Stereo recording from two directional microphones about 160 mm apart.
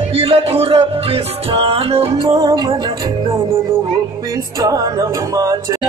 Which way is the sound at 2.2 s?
25° right (ahead or behind).